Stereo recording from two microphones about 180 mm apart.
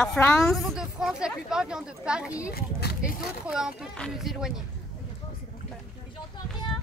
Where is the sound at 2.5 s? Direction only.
60° left (ahead or behind).